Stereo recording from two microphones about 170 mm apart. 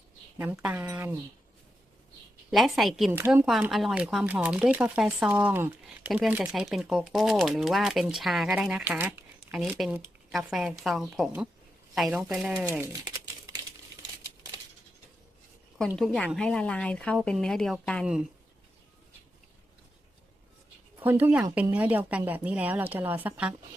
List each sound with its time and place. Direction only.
0.5 s speech: 10° right (ahead or behind)
2.5 s speech: centre (ahead or behind)
3.1 s speech: 15° right (ahead or behind)
3.4 s speech: centre (ahead or behind)
16.0 s speech: 5° left (ahead or behind)
21.0 s speech: 10° right (ahead or behind)